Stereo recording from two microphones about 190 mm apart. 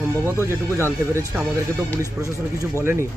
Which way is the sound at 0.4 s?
15° right (ahead or behind).